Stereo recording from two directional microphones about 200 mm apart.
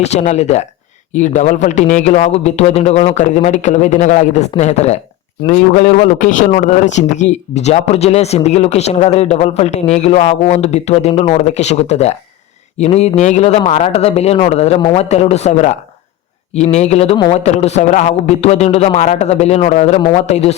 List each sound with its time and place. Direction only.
0.0 s speech: 35° left (ahead or behind)
16.7 s speech: 35° left (ahead or behind)